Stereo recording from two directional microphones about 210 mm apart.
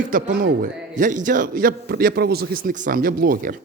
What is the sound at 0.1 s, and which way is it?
A man's voice, 40° right (ahead or behind).